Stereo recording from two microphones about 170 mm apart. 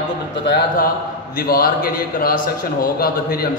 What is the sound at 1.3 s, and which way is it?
A man's voice, 60° left (ahead or behind).